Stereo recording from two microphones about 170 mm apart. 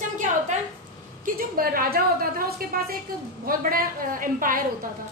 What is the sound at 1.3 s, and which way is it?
A woman's voice, 60° right (ahead or behind).